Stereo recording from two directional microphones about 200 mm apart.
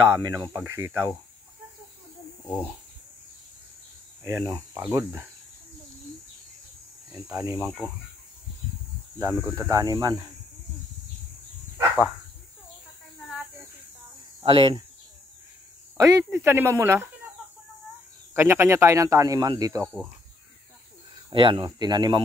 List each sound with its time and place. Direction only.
0.2 s speech: 15° right (ahead or behind)
2.4 s speech: 5° left (ahead or behind)
4.2 s speech: 15° right (ahead or behind)
7.2 s speech: 15° right (ahead or behind)
9.2 s speech: 10° right (ahead or behind)
14.4 s speech: 25° right (ahead or behind)
16.0 s speech: 15° right (ahead or behind)
18.3 s speech: 10° right (ahead or behind)
21.1 s speech: 25° right (ahead or behind)